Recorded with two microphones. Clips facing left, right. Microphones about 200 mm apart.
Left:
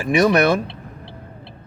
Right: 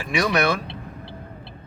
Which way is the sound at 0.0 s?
45° left (ahead or behind).